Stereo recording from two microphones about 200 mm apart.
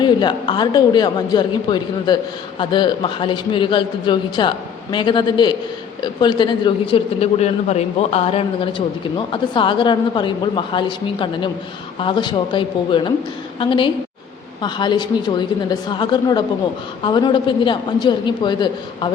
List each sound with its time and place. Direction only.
0.0 s a man's voice: 20° left (ahead or behind)